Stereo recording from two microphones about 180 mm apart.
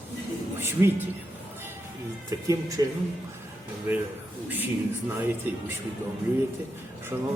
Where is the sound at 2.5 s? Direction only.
20° right (ahead or behind).